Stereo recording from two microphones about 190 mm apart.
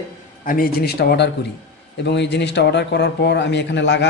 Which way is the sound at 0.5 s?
55° left (ahead or behind).